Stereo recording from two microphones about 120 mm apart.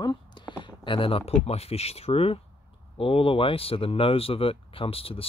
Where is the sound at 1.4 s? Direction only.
60° left (ahead or behind).